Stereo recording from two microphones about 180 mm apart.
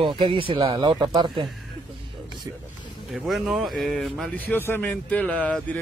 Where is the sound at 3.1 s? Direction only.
Centre (ahead or behind).